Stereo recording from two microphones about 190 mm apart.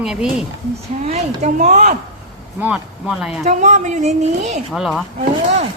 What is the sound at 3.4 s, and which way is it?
Speech, 35° right (ahead or behind).